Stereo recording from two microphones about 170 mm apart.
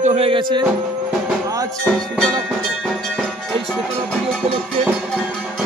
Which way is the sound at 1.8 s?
5° left (ahead or behind).